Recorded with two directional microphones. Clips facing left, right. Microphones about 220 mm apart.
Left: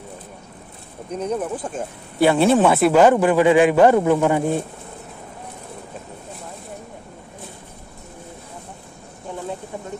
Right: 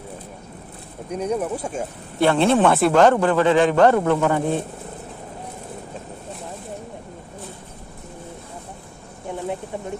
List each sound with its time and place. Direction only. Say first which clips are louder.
1.1 s speech: right 1 dB; 10° right (ahead or behind)
2.1 s a man's voice: left 2 dB; 5° left (ahead or behind)
9.3 s a sound: right 2 dB; 20° right (ahead or behind)